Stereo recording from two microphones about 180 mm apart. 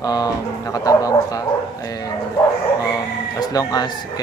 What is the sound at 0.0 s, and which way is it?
Speech, 20° left (ahead or behind).